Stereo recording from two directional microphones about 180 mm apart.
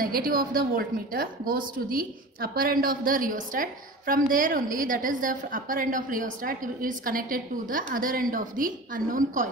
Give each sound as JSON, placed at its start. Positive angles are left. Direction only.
{"t": 0.0, "sound": "a woman's voice", "side_deg": -55}